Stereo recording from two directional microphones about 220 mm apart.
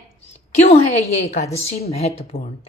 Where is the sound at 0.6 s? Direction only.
30° left (ahead or behind).